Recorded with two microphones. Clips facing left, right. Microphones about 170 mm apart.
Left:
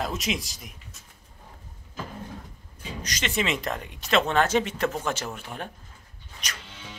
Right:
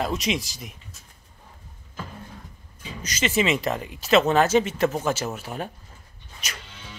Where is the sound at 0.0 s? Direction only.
Centre (ahead or behind).